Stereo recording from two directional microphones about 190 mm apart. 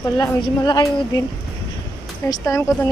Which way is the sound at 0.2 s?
25° left (ahead or behind).